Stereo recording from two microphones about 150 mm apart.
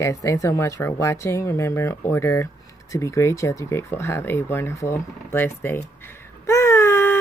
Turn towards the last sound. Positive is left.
turn(degrees=15)  # may be behind; listen again after turning